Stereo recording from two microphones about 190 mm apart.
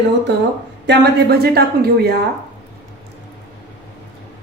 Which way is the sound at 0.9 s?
55° right (ahead or behind).